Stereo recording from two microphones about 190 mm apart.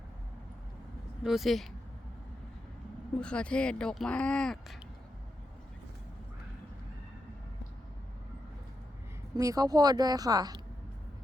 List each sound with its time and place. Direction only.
1.2 s speech: centre (ahead or behind)
3.2 s speech: 5° left (ahead or behind)
9.3 s speech: 20° right (ahead or behind)